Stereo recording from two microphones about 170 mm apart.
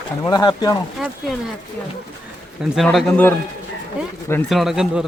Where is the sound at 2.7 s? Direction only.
Centre (ahead or behind).